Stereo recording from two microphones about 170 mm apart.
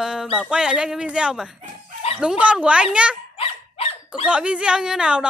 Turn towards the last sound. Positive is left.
turn(degrees=-5)  # may be behind; listen again after turning